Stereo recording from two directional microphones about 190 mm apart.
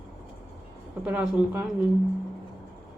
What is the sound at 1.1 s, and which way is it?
Speech, 5° right (ahead or behind).